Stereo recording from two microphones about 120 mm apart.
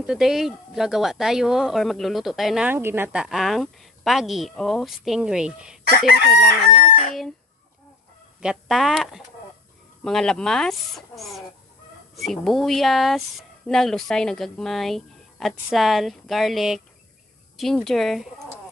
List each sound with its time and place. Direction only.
0.0 s speech: 5° right (ahead or behind)
2.7 s speech: 20° right (ahead or behind)
3.2 s speech: centre (ahead or behind)
8.4 s speech: 5° right (ahead or behind)